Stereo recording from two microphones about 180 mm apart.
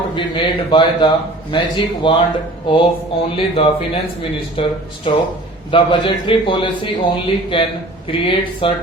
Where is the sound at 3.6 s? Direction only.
30° left (ahead or behind).